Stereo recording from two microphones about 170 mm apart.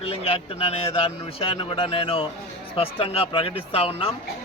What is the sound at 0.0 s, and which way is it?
A man's voice, 35° left (ahead or behind).